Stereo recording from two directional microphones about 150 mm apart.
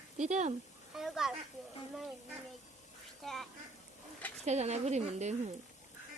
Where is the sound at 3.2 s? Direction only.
Centre (ahead or behind).